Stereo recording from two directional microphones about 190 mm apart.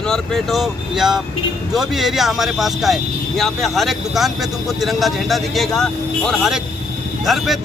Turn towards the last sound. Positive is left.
turn(degrees=0)  # may be behind; listen again after turning